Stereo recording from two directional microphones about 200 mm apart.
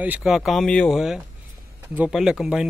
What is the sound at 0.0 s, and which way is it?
A man's voice, 5° right (ahead or behind).